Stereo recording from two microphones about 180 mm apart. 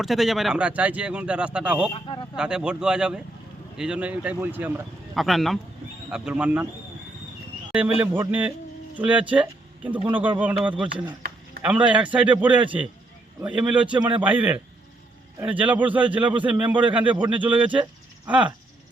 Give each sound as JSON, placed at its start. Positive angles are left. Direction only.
{"t": 0.0, "sound": "speech", "side_deg": 0}
{"t": 1.9, "sound": "speech", "side_deg": 25}
{"t": 2.3, "sound": "speech", "side_deg": -5}
{"t": 5.1, "sound": "speech", "side_deg": 0}
{"t": 7.7, "sound": "speech", "side_deg": -10}
{"t": 11.9, "sound": "speech", "side_deg": -5}